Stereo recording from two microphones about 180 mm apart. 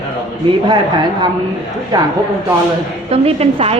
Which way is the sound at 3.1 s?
35° right (ahead or behind).